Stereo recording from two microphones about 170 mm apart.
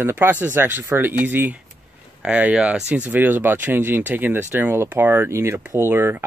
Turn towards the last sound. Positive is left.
turn(degrees=-15)  # may be behind; listen again after turning